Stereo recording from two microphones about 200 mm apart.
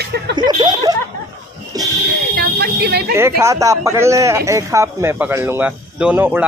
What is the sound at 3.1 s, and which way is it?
Speech, 10° right (ahead or behind).